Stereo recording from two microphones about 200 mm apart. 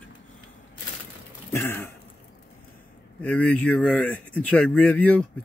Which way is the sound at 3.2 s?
5° left (ahead or behind).